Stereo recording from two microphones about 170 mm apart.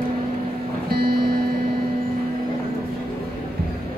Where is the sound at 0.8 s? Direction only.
65° right (ahead or behind).